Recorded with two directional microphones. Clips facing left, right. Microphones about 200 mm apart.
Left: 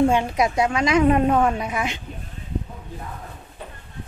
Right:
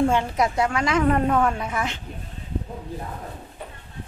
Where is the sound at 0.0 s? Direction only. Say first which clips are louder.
Left 2 dB; 15° left (ahead or behind).